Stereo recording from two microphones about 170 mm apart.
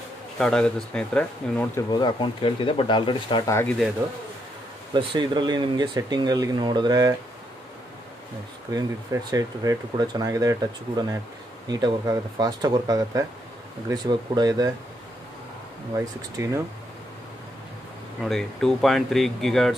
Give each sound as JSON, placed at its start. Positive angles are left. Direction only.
{"t": 0.4, "sound": "speech", "side_deg": 5}
{"t": 1.8, "sound": "speech", "side_deg": 25}
{"t": 4.9, "sound": "speech", "side_deg": -25}
{"t": 8.7, "sound": "speech", "side_deg": -20}
{"t": 16.4, "sound": "speech", "side_deg": -15}
{"t": 18.2, "sound": "speech", "side_deg": 0}